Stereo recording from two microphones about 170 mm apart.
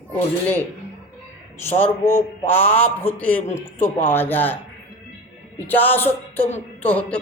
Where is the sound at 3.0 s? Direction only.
10° left (ahead or behind).